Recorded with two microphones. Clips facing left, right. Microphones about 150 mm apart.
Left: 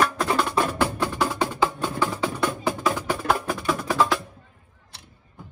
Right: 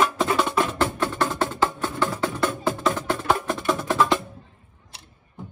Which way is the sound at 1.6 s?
20° left (ahead or behind).